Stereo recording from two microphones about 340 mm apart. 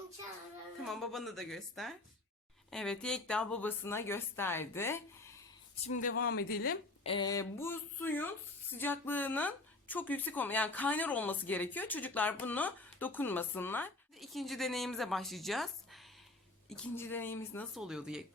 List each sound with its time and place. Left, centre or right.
0.9 s a woman's voice: centre
5.8 s speech: left
6.1 s speech: left
7.1 s a woman's voice: centre